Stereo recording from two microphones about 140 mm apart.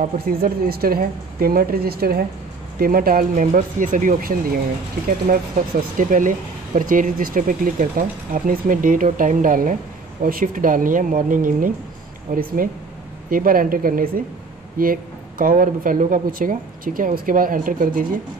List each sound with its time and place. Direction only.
0.0 s speech: 90° right
5.3 s speech: 70° right (ahead or behind)
13.3 s speech: 90° right; by 18.0 s 75° right (ahead or behind)